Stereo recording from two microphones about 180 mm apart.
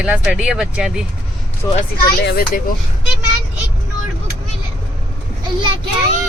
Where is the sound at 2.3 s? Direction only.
55° left (ahead or behind).